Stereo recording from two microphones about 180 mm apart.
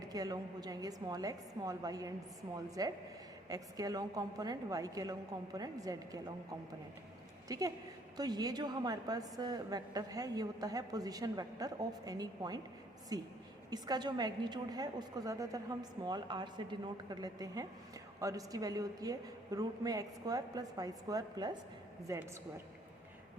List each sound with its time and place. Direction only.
0.1 s a woman's voice: 20° right (ahead or behind)
7.4 s a woman's voice: 20° right (ahead or behind)